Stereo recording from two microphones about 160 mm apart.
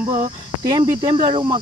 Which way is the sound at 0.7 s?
30° right (ahead or behind).